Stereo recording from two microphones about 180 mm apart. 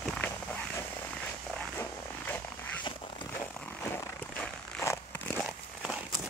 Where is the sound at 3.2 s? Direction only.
10° left (ahead or behind).